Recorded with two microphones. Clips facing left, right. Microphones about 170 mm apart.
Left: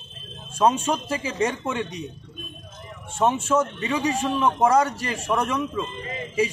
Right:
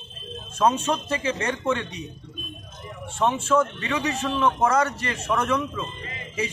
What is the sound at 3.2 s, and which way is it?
Speech, 10° left (ahead or behind).